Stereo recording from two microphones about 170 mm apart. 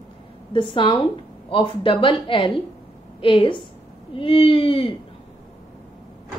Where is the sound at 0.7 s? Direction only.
30° left (ahead or behind).